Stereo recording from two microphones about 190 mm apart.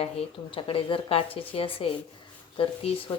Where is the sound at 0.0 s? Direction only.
30° left (ahead or behind).